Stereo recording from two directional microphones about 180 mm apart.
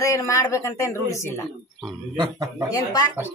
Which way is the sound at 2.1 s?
20° right (ahead or behind).